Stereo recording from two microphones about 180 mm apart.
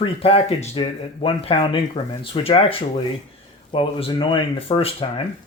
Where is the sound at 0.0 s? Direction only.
30° left (ahead or behind).